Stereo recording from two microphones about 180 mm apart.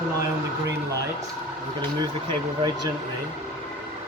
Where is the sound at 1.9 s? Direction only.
25° right (ahead or behind).